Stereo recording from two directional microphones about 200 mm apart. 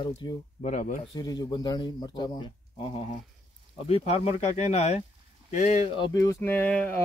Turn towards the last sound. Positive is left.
turn(degrees=10)  # may be behind; listen again after turning